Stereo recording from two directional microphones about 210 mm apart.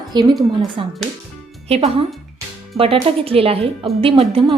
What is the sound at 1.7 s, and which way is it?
A woman's voice, 30° right (ahead or behind).